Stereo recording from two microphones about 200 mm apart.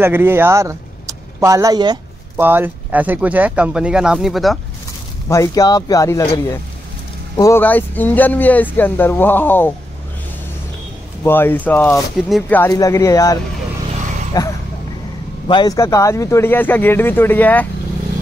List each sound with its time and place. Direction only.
0.0 s speech: 10° right (ahead or behind)
5.3 s speech: 15° left (ahead or behind)
11.2 s speech: 10° left (ahead or behind)
12.2 s speech: centre (ahead or behind)